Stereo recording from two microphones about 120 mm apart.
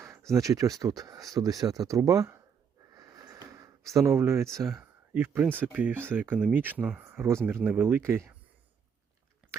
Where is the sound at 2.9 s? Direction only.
30° right (ahead or behind).